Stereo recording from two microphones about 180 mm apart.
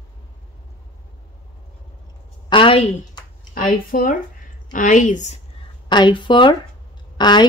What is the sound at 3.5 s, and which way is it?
A woman's voice, 55° left (ahead or behind).